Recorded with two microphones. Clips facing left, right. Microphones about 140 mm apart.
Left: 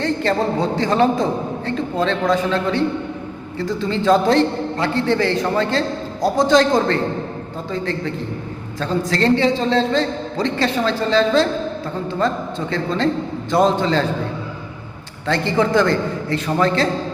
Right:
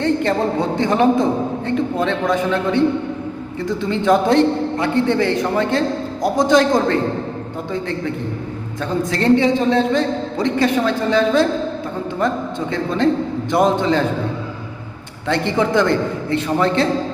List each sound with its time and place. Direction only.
0.0 s a sound: 15° right (ahead or behind)
0.8 s a man's voice: 20° right (ahead or behind)
8.8 s a man's voice: 15° right (ahead or behind)
15.3 s a man's voice: 20° right (ahead or behind)